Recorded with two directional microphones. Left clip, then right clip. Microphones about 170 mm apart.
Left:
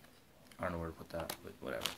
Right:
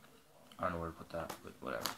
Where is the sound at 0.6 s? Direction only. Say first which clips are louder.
Right 2 dB; 20° left (ahead or behind).